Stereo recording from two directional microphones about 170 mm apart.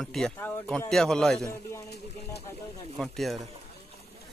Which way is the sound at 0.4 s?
15° left (ahead or behind).